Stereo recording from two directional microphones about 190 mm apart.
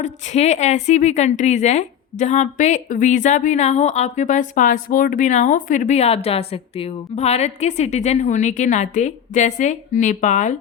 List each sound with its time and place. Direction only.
0.0 s a woman's voice: 35° left (ahead or behind)